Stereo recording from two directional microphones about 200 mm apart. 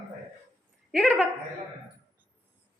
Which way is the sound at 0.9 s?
Centre (ahead or behind).